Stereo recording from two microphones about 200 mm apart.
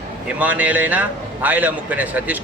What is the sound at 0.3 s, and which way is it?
A man's voice, 10° right (ahead or behind).